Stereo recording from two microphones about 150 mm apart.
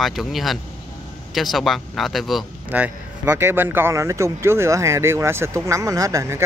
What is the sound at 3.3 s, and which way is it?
Speech, 15° right (ahead or behind).